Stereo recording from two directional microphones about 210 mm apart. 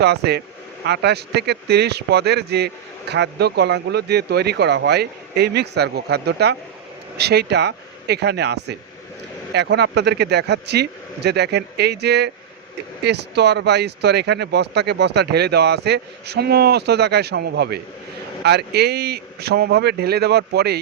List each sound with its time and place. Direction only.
0.0 s speech: 50° right (ahead or behind)